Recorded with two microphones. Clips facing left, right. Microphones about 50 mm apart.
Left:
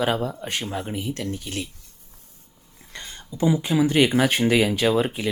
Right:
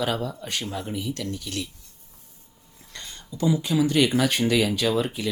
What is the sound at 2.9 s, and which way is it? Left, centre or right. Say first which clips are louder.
Speech: left 2 dB; left.